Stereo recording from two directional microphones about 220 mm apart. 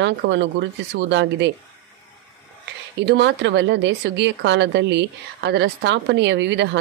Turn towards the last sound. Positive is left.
turn(degrees=-55)  # may be behind; listen again after turning